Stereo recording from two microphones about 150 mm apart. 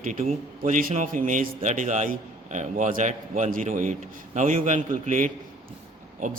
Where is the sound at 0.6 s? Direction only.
65° right (ahead or behind).